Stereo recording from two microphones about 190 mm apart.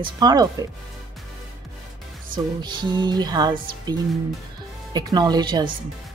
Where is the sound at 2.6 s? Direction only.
25° right (ahead or behind).